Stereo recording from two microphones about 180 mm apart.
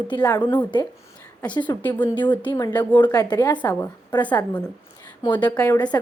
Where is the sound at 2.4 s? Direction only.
20° left (ahead or behind).